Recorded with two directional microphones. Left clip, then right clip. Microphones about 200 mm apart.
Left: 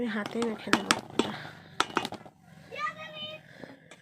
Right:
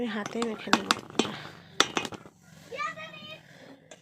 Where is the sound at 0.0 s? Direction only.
Centre (ahead or behind).